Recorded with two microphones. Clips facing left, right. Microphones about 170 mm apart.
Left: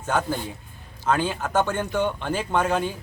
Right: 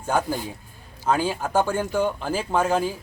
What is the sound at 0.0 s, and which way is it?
Speech, 10° right (ahead or behind).